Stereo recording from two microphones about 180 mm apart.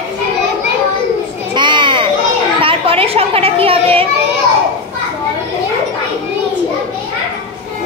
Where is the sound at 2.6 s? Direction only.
30° right (ahead or behind).